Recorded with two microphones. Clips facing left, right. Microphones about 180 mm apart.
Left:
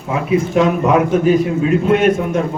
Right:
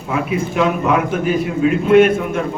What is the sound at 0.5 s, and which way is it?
A man's voice, 40° left (ahead or behind).